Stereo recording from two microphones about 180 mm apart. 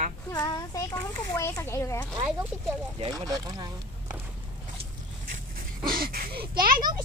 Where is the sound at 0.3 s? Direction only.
20° left (ahead or behind).